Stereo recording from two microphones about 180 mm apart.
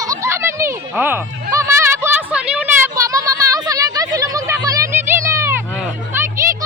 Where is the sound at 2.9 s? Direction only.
20° right (ahead or behind).